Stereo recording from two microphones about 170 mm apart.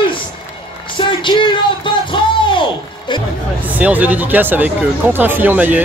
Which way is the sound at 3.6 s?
10° right (ahead or behind).